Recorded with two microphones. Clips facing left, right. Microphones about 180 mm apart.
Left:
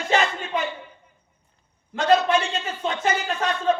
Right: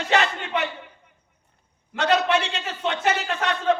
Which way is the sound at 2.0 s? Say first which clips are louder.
Left 2 dB; 70° right (ahead or behind).